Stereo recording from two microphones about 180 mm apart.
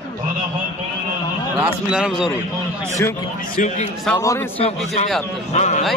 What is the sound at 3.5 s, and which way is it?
Speech, 40° left (ahead or behind).